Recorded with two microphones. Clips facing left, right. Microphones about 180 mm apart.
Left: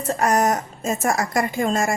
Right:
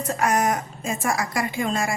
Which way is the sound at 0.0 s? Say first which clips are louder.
Left 3 dB; 35° left (ahead or behind).